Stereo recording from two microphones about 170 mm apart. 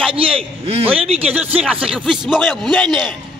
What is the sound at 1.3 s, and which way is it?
A man's voice, 10° right (ahead or behind).